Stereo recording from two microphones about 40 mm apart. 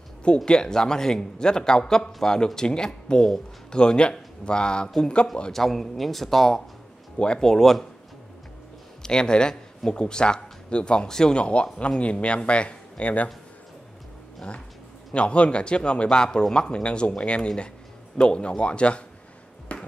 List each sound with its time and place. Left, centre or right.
0.5 s a man's voice: centre
5.5 s speech: centre
7.2 s a man's voice: left
7.4 s speech: centre
9.0 s speech: left
11.3 s a man's voice: left
15.1 s a man's voice: left
18.1 s a man's voice: left
19.7 s a sound: left